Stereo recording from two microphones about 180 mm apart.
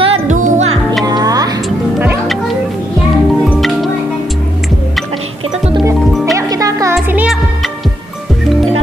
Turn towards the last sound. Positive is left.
turn(degrees=0)  # may be behind; listen again after turning